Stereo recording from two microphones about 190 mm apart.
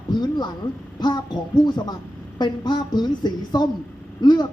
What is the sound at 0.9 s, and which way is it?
A woman's voice, 20° left (ahead or behind).